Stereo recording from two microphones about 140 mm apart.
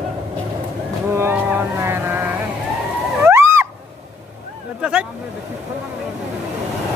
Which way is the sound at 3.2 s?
20° right (ahead or behind).